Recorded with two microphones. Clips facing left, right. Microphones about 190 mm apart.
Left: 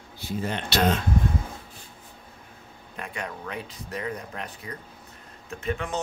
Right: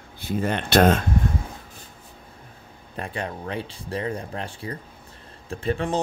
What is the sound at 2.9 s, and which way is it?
Speech, 30° right (ahead or behind).